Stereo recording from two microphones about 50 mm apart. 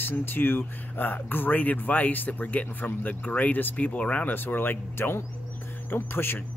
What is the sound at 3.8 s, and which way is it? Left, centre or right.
Speech, left.